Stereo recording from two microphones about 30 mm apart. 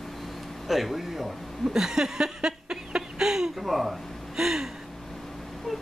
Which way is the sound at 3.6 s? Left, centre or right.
Centre.